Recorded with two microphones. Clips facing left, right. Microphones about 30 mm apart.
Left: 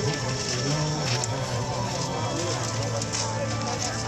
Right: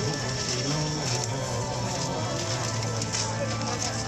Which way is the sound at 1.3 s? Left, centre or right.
Centre.